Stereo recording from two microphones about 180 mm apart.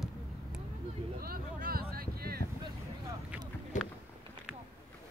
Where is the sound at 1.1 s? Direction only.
55° right (ahead or behind).